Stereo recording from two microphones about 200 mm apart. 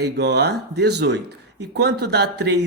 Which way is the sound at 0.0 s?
55° right (ahead or behind).